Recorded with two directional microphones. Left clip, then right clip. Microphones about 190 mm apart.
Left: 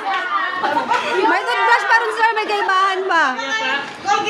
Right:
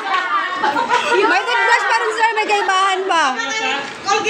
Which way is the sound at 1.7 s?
15° left (ahead or behind).